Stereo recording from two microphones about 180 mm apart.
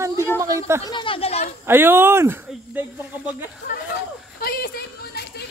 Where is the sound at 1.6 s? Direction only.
10° right (ahead or behind).